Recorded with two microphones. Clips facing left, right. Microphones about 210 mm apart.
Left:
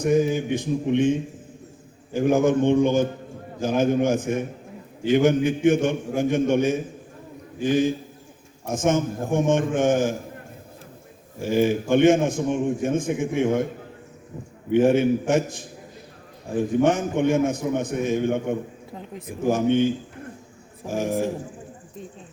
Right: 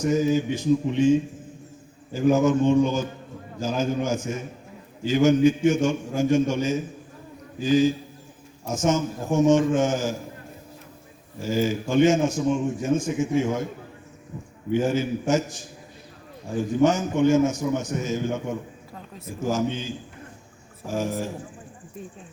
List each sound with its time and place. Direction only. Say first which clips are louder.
0.0 s a man's voice: left 1 dB; 55° left (ahead or behind)
2.1 s a man's voice: even; 55° left (ahead or behind)
11.4 s a man's voice: left 4 dB; 55° left (ahead or behind)
14.7 s a man's voice: left 5 dB; 55° left (ahead or behind)
16.8 s a man's voice: right 3 dB; 55° left (ahead or behind)
18.9 s speech: left 5 dB; 20° left (ahead or behind)
19.4 s a man's voice: left 6 dB; 55° left (ahead or behind)
20.9 s a man's voice: left 3 dB; 55° left (ahead or behind)